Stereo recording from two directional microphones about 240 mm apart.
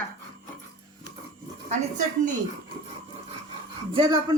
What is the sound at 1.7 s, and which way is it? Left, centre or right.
Speech, right.